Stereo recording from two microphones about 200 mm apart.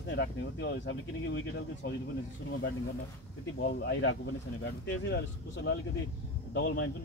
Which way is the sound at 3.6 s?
60° left (ahead or behind).